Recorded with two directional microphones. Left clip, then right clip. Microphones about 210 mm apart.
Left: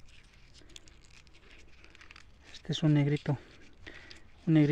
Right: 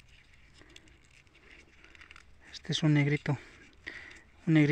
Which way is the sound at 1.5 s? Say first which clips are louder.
Right 2 dB; 30° left (ahead or behind).